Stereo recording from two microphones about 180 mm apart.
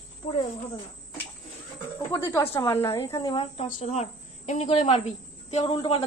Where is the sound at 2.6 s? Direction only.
15° left (ahead or behind); by 3.7 s 30° left (ahead or behind).